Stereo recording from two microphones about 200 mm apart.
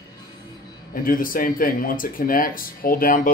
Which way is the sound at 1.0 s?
45° left (ahead or behind).